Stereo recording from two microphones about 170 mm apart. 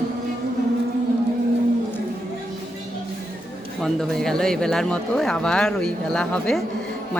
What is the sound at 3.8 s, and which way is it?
Speech, 5° left (ahead or behind).